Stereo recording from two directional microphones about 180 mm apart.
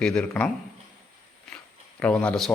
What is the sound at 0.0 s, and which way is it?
Speech, 5° left (ahead or behind).